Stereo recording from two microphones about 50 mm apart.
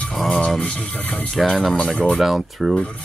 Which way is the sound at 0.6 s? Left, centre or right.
Left.